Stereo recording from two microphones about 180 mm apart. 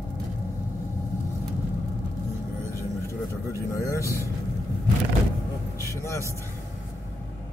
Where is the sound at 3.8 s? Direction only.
15° left (ahead or behind).